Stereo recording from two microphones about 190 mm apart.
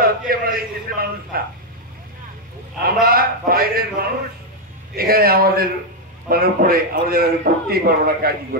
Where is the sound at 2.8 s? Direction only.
50° right (ahead or behind).